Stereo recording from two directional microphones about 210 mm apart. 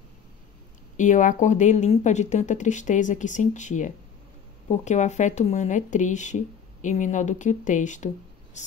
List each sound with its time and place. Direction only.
0.9 s speech: 35° left (ahead or behind)